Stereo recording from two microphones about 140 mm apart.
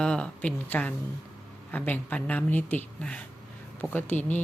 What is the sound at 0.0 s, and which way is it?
Speech, 5° left (ahead or behind).